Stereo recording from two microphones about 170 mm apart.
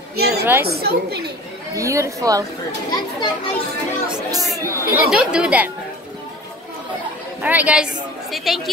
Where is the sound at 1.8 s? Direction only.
20° right (ahead or behind).